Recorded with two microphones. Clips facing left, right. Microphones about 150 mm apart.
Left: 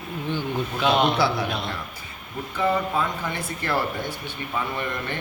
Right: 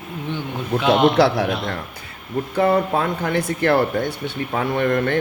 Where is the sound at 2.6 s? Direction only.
65° right (ahead or behind).